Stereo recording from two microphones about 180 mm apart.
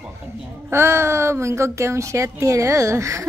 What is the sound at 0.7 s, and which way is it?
Speech, 15° right (ahead or behind).